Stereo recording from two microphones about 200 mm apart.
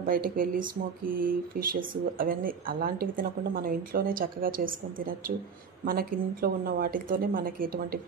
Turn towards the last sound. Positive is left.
turn(degrees=-50)  # may be behind; listen again after turning